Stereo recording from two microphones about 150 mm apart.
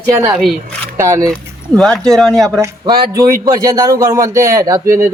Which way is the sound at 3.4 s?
25° right (ahead or behind).